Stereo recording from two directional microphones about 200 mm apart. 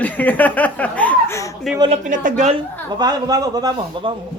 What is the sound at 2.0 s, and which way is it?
Speech, 40° right (ahead or behind).